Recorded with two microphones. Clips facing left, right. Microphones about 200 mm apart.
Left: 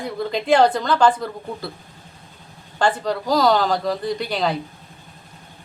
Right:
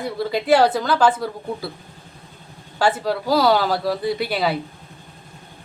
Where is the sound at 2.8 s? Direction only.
5° right (ahead or behind).